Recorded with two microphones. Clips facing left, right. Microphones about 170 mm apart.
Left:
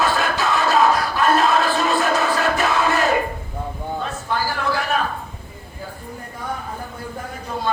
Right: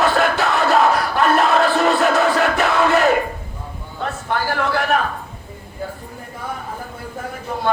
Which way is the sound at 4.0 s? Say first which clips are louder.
Right 4 dB; 60° right (ahead or behind).